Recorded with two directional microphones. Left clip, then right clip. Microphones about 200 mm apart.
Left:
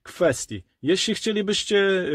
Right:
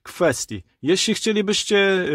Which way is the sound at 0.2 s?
25° right (ahead or behind).